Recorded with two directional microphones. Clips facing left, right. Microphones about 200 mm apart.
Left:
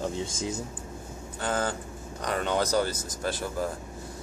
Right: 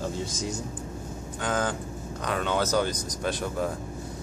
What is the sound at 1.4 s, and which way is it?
Speech, 10° left (ahead or behind).